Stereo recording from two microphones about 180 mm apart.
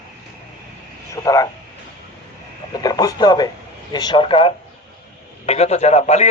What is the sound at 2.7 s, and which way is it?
A man's voice, 20° left (ahead or behind).